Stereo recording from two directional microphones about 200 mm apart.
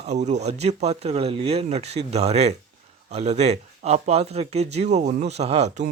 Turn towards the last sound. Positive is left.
turn(degrees=-35)  # may be behind; listen again after turning